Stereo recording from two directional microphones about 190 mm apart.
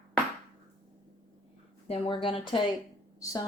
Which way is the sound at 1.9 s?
25° left (ahead or behind).